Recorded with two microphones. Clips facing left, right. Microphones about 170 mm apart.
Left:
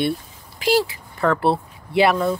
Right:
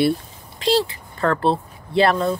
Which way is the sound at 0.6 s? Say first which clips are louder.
Even; 10° left (ahead or behind).